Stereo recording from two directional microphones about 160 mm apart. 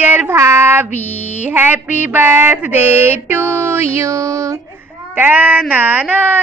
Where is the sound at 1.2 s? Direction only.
45° left (ahead or behind).